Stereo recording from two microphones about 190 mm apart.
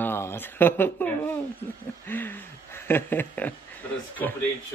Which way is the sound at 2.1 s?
10° left (ahead or behind).